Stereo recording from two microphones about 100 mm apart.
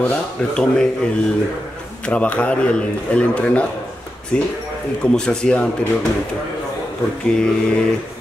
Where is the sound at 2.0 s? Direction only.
10° left (ahead or behind).